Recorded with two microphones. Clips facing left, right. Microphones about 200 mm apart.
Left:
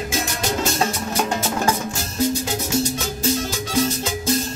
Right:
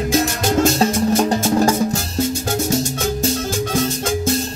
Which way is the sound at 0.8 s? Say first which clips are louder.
Right 7 dB; 35° right (ahead or behind).